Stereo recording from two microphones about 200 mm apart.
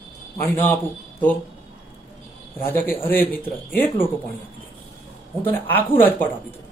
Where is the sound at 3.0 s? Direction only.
10° left (ahead or behind).